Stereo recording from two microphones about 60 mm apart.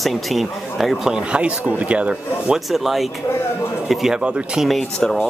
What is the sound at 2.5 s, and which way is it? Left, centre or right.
Speech, centre.